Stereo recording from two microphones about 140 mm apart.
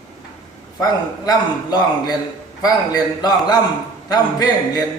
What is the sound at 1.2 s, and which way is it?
A man's voice, 30° left (ahead or behind).